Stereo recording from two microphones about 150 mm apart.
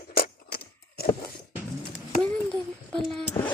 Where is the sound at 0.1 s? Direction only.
90° left.